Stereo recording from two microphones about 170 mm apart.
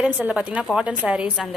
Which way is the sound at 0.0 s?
5° right (ahead or behind).